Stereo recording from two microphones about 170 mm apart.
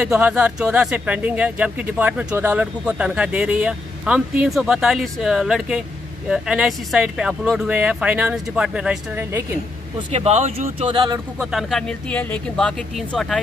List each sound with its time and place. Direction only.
0.0 s speech: 5° right (ahead or behind)
9.9 s speech: 35° right (ahead or behind)
11.3 s speech: centre (ahead or behind)